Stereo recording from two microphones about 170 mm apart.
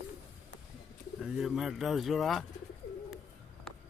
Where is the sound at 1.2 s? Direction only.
5° right (ahead or behind).